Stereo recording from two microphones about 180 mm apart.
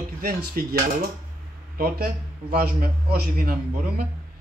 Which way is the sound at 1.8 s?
55° right (ahead or behind).